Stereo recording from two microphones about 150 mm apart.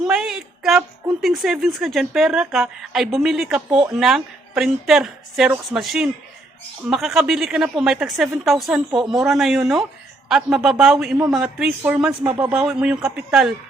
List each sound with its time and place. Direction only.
0.0 s a sound: 5° right (ahead or behind)
1.2 s a woman's voice: centre (ahead or behind)
12.2 s a man's voice: 15° right (ahead or behind)
12.5 s a woman's voice: 5° right (ahead or behind)